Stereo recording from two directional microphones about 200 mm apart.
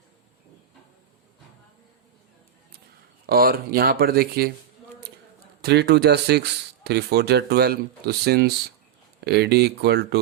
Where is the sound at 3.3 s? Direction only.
50° right (ahead or behind).